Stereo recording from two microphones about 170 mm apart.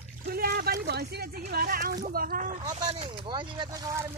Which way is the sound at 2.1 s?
60° right (ahead or behind).